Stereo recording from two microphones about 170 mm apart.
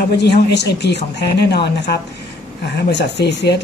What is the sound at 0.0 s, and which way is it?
Speech, 80° left.